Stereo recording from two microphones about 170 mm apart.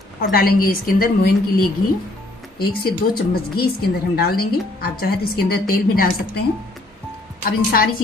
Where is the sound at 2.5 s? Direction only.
65° left (ahead or behind).